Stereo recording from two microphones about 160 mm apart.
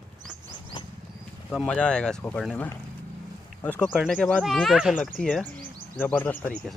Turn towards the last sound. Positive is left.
turn(degrees=10)  # may be behind; listen again after turning